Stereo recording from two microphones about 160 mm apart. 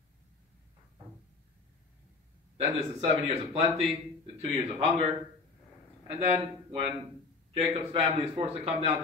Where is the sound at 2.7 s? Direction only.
40° right (ahead or behind).